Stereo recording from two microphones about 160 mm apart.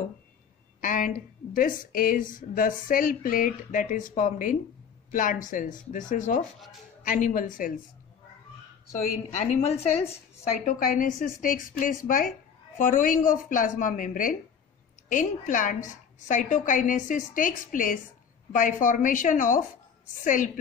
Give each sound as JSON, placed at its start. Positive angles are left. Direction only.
{"t": 0.7, "sound": "a woman's voice", "side_deg": 60}
{"t": 9.4, "sound": "a woman's voice", "side_deg": 45}
{"t": 10.1, "sound": "a woman's voice", "side_deg": 55}